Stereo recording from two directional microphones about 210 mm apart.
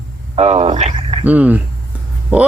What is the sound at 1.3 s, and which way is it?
Speech, 5° right (ahead or behind).